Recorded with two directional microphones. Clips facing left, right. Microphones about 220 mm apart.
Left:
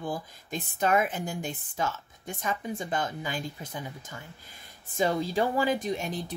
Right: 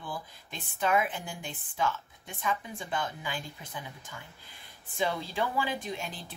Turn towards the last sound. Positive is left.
turn(degrees=40)  # may be behind; listen again after turning